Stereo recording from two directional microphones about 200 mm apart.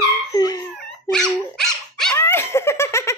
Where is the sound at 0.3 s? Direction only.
20° left (ahead or behind).